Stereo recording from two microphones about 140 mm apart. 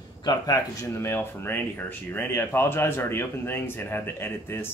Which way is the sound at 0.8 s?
20° left (ahead or behind).